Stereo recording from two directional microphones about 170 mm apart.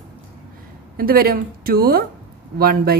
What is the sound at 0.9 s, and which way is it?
A woman's voice, 60° right (ahead or behind).